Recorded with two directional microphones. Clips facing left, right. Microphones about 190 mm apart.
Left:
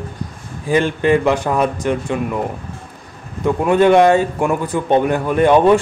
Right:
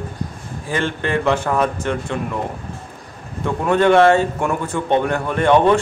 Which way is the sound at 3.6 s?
15° left (ahead or behind).